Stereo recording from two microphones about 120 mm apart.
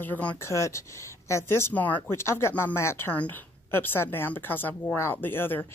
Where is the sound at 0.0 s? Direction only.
15° left (ahead or behind).